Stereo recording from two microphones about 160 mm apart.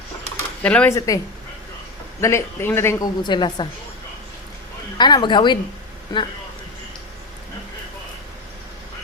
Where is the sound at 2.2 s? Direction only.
15° left (ahead or behind).